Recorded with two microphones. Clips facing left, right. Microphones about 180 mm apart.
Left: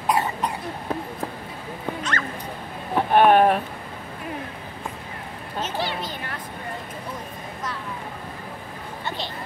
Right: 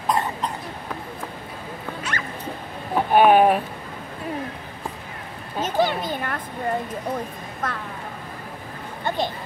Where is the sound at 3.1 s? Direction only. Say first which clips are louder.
Right 1 dB; 5° right (ahead or behind).